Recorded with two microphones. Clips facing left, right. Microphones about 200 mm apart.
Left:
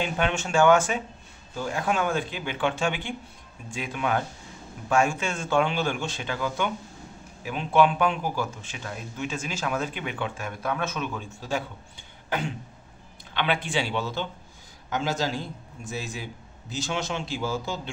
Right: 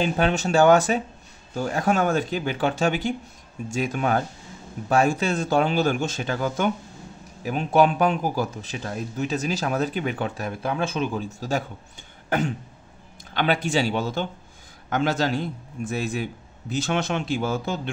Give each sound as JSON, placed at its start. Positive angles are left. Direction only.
{"t": 0.0, "sound": "speech", "side_deg": -35}
{"t": 12.3, "sound": "cough", "side_deg": -45}
{"t": 13.3, "sound": "speech", "side_deg": -40}
{"t": 14.9, "sound": "a man's voice", "side_deg": -60}